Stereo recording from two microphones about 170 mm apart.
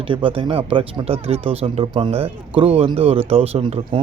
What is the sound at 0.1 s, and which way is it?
Speech, 30° right (ahead or behind).